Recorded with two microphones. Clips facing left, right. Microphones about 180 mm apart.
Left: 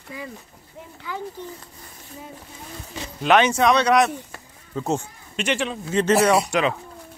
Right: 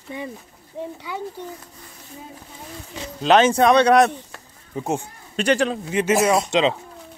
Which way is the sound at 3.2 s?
40° right (ahead or behind).